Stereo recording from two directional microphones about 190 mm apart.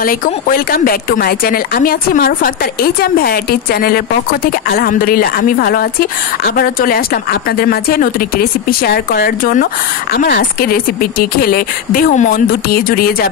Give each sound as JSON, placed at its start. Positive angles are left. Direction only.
{"t": 0.0, "sound": "speech", "side_deg": 50}